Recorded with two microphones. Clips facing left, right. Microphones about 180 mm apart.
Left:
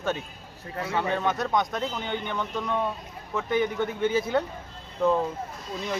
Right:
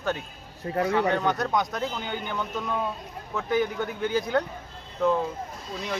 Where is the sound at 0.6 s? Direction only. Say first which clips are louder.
Right 8 dB; 30° right (ahead or behind).